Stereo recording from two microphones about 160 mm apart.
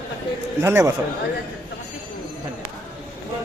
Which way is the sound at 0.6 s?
15° right (ahead or behind).